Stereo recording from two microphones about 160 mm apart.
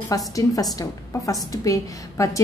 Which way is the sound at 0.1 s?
20° left (ahead or behind).